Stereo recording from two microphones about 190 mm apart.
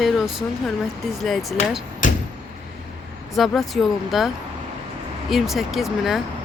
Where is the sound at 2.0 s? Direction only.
45° left (ahead or behind).